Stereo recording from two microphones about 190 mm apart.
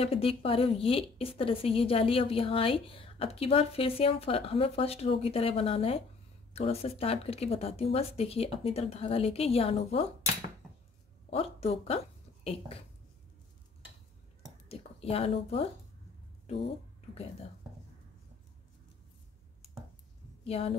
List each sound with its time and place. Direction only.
0.0 s a woman's voice: 30° left (ahead or behind)
11.2 s speech: 30° left (ahead or behind)
14.7 s speech: 30° left (ahead or behind)
20.4 s a woman's voice: 30° left (ahead or behind)